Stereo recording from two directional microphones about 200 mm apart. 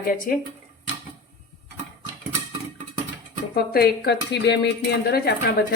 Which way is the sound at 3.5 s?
50° left (ahead or behind).